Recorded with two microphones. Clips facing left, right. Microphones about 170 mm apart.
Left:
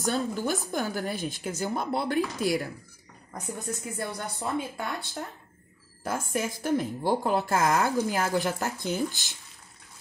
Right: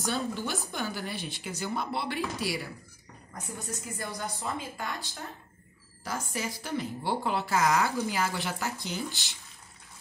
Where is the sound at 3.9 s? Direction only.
60° left (ahead or behind).